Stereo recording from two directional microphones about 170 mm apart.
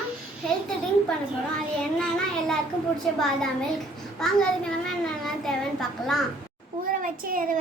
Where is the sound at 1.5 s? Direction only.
5° left (ahead or behind).